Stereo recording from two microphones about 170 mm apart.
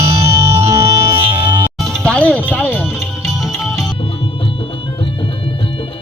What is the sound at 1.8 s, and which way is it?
Music, centre (ahead or behind).